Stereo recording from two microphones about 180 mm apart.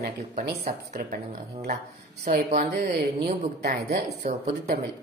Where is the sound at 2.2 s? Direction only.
40° right (ahead or behind).